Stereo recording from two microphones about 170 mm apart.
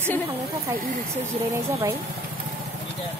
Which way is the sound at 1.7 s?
15° right (ahead or behind).